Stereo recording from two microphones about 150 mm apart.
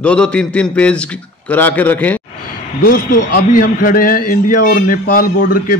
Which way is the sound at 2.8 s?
75° left (ahead or behind).